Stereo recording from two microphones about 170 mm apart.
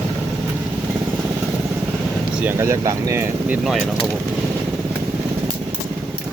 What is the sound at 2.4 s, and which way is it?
Speech, 15° right (ahead or behind).